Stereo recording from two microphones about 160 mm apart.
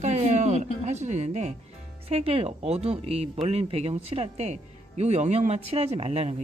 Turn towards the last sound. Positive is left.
turn(degrees=-45)  # may be behind; listen again after turning